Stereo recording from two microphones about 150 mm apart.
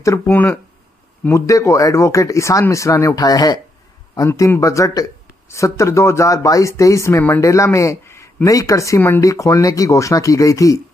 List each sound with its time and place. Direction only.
0.0 s speech: 20° left (ahead or behind)